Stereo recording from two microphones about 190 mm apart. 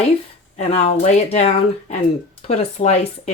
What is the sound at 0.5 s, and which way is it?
Speech, 35° left (ahead or behind).